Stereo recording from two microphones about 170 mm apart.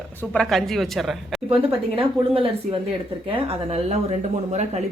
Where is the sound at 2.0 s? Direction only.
35° right (ahead or behind).